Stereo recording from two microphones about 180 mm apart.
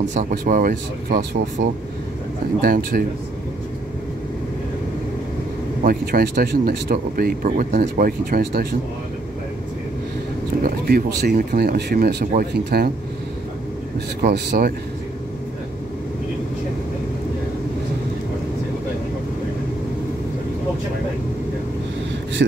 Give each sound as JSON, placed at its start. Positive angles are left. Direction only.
{"t": 0.1, "sound": "speech", "side_deg": -45}
{"t": 5.9, "sound": "speech", "side_deg": -55}
{"t": 10.6, "sound": "speech", "side_deg": -55}
{"t": 14.2, "sound": "speech", "side_deg": -65}
{"t": 22.4, "sound": "a man's voice", "side_deg": -70}